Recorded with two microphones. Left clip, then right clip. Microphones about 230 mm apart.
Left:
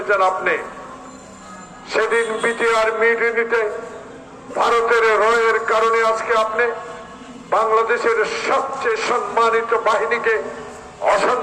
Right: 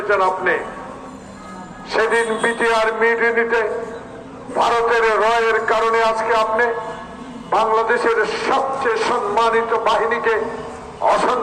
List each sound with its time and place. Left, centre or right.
0.1 s a man's voice: left
1.9 s a man's voice: left